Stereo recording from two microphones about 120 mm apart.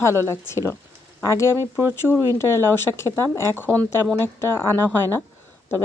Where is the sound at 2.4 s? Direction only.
20° left (ahead or behind).